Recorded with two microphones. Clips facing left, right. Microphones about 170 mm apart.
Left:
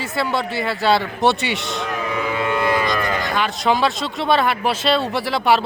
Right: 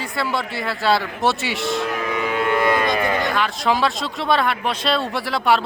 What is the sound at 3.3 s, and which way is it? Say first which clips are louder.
Speech: left 1 dB; centre (ahead or behind).